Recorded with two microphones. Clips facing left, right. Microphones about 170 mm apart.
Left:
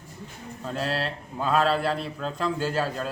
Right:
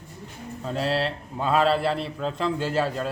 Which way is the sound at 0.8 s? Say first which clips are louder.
Right 4 dB; 30° right (ahead or behind).